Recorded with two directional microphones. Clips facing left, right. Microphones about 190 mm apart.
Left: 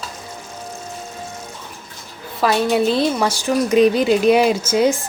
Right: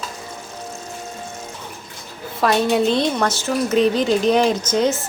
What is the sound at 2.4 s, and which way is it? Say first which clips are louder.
A woman's voice: even; centre (ahead or behind).